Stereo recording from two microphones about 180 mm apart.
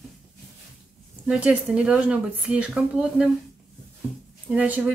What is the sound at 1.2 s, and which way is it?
Speech, 5° right (ahead or behind).